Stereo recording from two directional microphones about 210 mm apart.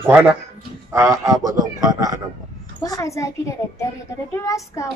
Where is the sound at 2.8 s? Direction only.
15° left (ahead or behind).